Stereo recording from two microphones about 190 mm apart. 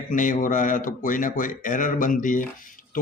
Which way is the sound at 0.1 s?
45° left (ahead or behind).